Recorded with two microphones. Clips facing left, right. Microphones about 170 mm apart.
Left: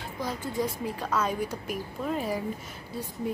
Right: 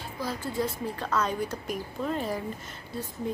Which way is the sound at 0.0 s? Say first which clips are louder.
Even; 15° left (ahead or behind).